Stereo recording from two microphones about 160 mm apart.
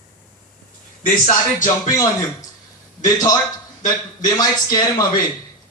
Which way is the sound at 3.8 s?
25° left (ahead or behind).